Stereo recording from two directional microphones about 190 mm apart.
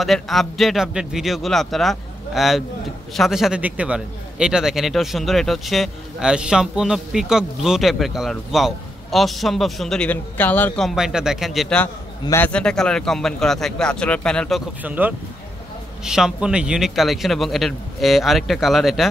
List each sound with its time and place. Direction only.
0.0 s a man's voice: centre (ahead or behind)
14.8 s a man's voice: 10° right (ahead or behind)